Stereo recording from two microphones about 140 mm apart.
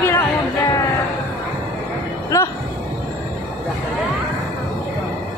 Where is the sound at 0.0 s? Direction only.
15° left (ahead or behind).